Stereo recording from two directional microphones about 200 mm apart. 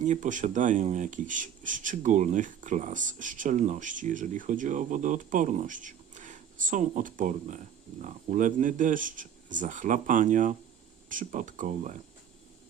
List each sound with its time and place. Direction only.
0.0 s speech: 40° right (ahead or behind)